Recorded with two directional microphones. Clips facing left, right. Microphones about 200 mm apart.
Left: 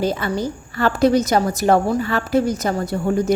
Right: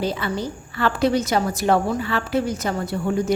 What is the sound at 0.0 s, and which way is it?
A woman's voice, 45° left (ahead or behind).